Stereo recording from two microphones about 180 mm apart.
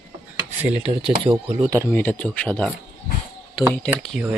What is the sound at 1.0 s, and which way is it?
Speech, 30° right (ahead or behind).